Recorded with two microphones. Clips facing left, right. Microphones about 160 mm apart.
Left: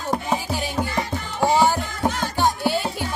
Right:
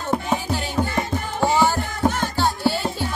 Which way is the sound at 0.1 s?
10° left (ahead or behind).